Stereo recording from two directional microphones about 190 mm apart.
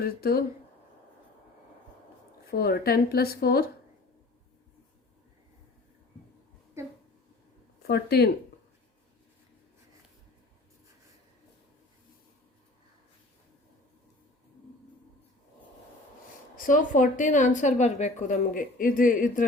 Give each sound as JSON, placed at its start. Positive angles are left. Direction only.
{"t": 0.0, "sound": "speech", "side_deg": 55}
{"t": 2.5, "sound": "speech", "side_deg": 55}
{"t": 6.8, "sound": "a sound", "side_deg": -15}
{"t": 7.8, "sound": "speech", "side_deg": 55}
{"t": 16.6, "sound": "a woman's voice", "side_deg": 45}